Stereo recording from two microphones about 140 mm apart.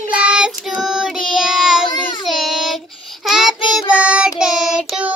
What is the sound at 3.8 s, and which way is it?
Child singing, 10° right (ahead or behind).